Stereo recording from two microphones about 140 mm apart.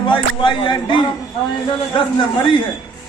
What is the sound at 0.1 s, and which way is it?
Speech, 35° left (ahead or behind).